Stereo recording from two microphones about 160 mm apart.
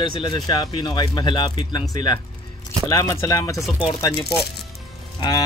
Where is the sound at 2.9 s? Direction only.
20° left (ahead or behind).